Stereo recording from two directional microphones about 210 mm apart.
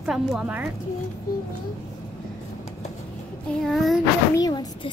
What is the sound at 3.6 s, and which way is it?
Speech, centre (ahead or behind).